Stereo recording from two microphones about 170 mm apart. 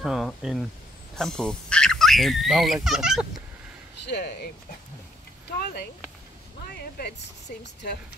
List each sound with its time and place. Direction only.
0.0 s speech: centre (ahead or behind)
4.0 s speech: 75° left (ahead or behind)
6.7 s a woman's voice: 70° left (ahead or behind)